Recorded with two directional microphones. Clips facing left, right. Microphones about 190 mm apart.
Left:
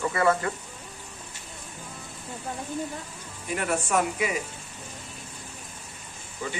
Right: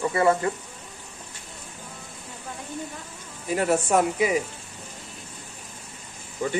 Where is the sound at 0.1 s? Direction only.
25° right (ahead or behind).